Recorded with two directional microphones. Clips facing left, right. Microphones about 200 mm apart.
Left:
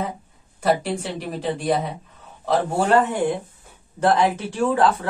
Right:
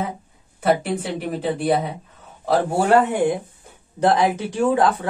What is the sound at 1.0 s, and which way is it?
Speech, 5° right (ahead or behind).